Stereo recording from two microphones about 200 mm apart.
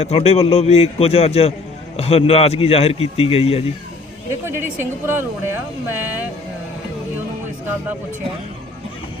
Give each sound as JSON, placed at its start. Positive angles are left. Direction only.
{"t": 0.0, "sound": "a man's voice", "side_deg": 30}
{"t": 4.3, "sound": "speech", "side_deg": -10}